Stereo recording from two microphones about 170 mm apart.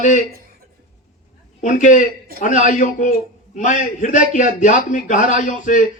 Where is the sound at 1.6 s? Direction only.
50° left (ahead or behind).